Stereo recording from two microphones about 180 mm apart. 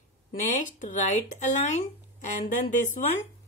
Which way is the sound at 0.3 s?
45° left (ahead or behind).